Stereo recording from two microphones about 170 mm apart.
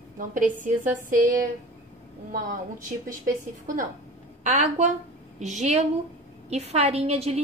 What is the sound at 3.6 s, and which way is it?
A woman's voice, 50° right (ahead or behind).